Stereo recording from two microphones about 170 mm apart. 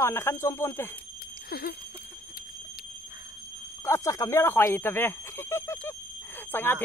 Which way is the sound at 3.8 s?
15° left (ahead or behind).